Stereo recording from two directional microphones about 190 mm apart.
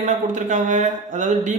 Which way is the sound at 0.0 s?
40° right (ahead or behind).